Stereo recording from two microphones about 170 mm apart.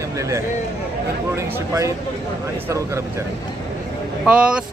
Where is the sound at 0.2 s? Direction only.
20° right (ahead or behind).